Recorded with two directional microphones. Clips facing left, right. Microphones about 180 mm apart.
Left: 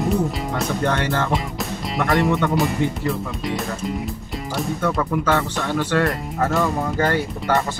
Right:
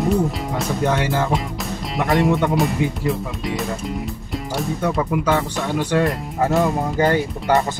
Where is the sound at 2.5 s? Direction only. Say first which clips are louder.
Right 1 dB; centre (ahead or behind).